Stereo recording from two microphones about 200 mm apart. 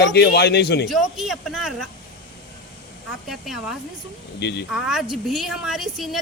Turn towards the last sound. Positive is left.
turn(degrees=0)  # may be behind; listen again after turning